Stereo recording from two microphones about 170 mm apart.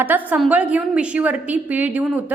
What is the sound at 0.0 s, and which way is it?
A woman's voice, 10° right (ahead or behind).